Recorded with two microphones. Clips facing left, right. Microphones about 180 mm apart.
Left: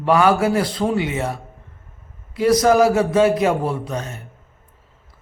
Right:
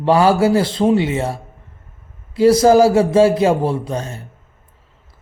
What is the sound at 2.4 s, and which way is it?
A man's voice, 30° right (ahead or behind).